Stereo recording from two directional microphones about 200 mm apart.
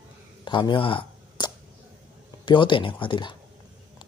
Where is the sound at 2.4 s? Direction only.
25° left (ahead or behind).